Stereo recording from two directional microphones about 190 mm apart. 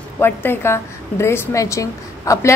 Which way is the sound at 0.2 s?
10° left (ahead or behind).